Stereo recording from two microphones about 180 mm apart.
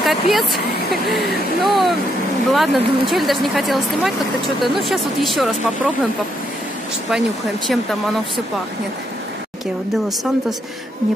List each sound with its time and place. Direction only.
0.0 s speech: centre (ahead or behind)
7.1 s speech: centre (ahead or behind)